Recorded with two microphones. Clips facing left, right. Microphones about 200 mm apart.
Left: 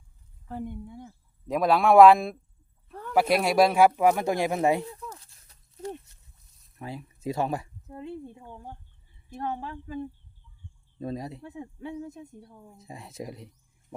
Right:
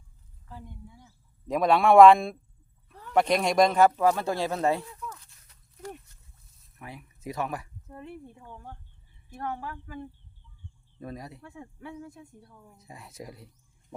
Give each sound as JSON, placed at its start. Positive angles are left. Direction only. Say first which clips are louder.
{"t": 0.4, "sound": "speech", "louder": "left 10 dB", "side_deg": 60}
{"t": 1.5, "sound": "a man's voice", "louder": "even", "side_deg": 0}
{"t": 2.9, "sound": "a sound", "louder": "left 8 dB", "side_deg": 55}
{"t": 3.2, "sound": "speech", "louder": "left 1 dB", "side_deg": 5}
{"t": 4.9, "sound": "a sound", "louder": "left 1 dB", "side_deg": 30}
{"t": 6.7, "sound": "speech", "louder": "left 6 dB", "side_deg": 30}